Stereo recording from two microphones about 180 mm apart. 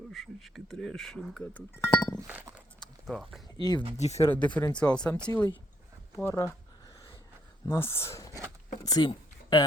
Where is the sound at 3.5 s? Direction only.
25° left (ahead or behind).